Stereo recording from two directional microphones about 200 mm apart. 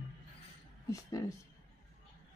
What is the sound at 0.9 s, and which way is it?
Speech, 15° left (ahead or behind).